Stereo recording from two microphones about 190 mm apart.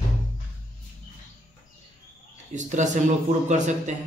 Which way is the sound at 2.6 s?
40° right (ahead or behind).